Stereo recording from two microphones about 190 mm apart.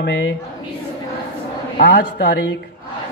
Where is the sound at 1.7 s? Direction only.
50° left (ahead or behind).